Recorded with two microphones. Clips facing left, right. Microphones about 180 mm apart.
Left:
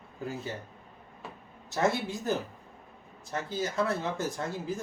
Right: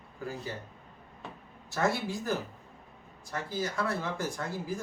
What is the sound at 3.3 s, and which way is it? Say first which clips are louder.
Speech: left 1 dB; 25° left (ahead or behind).